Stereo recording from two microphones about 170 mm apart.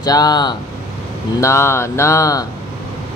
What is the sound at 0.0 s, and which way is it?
Speech, 25° left (ahead or behind).